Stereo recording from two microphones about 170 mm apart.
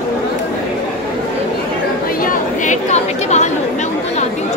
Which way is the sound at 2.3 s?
45° left (ahead or behind).